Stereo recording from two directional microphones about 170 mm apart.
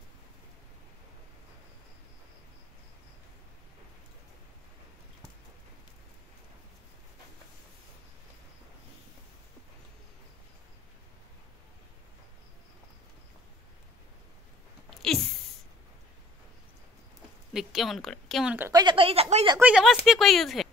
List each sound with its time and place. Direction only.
14.9 s a sound: centre (ahead or behind)
17.5 s a woman's voice: centre (ahead or behind)
18.7 s speech: 25° right (ahead or behind)
19.6 s a woman's voice: 5° right (ahead or behind)